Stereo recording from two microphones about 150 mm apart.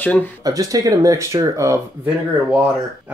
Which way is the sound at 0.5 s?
25° right (ahead or behind).